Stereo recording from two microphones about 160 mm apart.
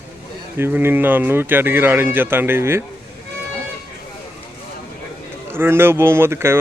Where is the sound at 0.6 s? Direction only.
15° right (ahead or behind).